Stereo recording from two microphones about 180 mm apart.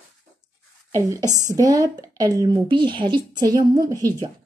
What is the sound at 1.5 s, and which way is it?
A woman's voice, 20° right (ahead or behind).